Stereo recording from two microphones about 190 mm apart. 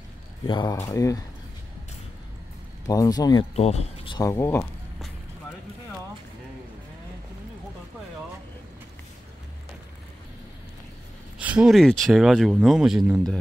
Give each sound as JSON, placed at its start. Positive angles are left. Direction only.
{"t": 0.5, "sound": "speech", "side_deg": 25}
{"t": 2.9, "sound": "speech", "side_deg": 20}
{"t": 3.5, "sound": "speech", "side_deg": 35}
{"t": 11.3, "sound": "speech", "side_deg": -5}